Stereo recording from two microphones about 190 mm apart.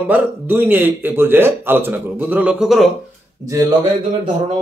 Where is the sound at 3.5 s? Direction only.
20° right (ahead or behind).